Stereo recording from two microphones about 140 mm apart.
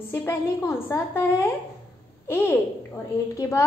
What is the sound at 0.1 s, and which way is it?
A woman's voice, 15° left (ahead or behind).